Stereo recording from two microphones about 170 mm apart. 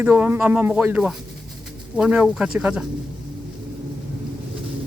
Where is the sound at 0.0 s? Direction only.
10° right (ahead or behind).